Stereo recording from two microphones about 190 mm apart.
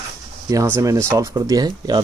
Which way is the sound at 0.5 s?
15° right (ahead or behind).